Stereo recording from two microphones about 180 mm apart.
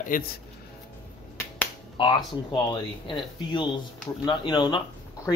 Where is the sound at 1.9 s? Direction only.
25° left (ahead or behind).